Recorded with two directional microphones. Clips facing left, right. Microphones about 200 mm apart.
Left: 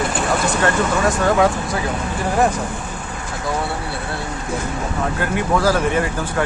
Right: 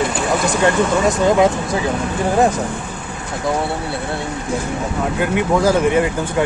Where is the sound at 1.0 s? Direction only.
20° right (ahead or behind).